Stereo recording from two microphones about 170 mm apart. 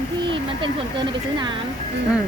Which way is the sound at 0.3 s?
25° right (ahead or behind).